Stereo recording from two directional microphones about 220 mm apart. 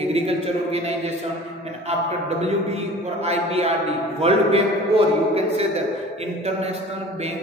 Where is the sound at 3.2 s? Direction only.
30° right (ahead or behind).